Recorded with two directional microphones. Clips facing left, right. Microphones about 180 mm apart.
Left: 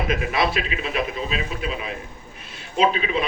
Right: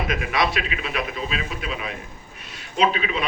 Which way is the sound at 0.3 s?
40° left (ahead or behind).